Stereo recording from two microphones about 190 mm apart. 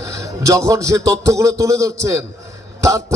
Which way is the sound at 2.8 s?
15° right (ahead or behind).